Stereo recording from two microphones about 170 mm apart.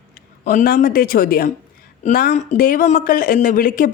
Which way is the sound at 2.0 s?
50° left (ahead or behind).